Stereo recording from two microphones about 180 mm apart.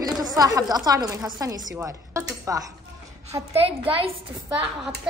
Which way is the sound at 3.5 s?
30° right (ahead or behind).